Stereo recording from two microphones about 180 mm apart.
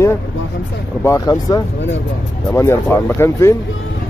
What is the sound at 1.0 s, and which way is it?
Speech, 20° left (ahead or behind).